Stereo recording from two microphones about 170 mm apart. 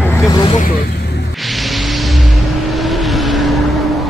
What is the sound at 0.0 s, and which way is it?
Vehicle, 20° left (ahead or behind).